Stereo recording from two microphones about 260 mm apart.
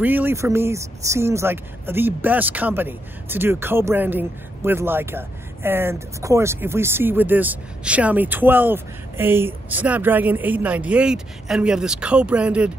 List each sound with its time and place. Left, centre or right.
0.0 s speech: centre